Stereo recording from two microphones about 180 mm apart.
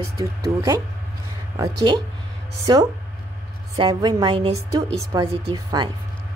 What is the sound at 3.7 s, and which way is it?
Speech, 20° right (ahead or behind).